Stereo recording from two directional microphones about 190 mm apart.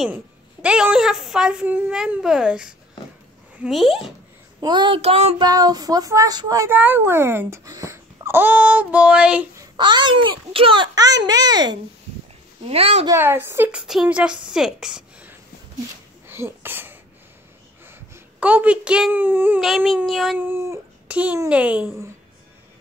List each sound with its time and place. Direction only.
0.0 s a woman's voice: 5° right (ahead or behind)
4.6 s a child's voice: 25° right (ahead or behind)
5.4 s speech: 20° right (ahead or behind); by 9.5 s 5° right (ahead or behind)
9.8 s a child's voice: 25° right (ahead or behind)
13.1 s a woman's voice: 10° right (ahead or behind)
16.3 s sneeze: 10° right (ahead or behind)
17.8 s speech: 10° right (ahead or behind)
20.3 s speech: 10° right (ahead or behind)